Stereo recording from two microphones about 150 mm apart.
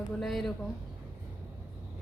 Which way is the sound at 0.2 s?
Centre (ahead or behind).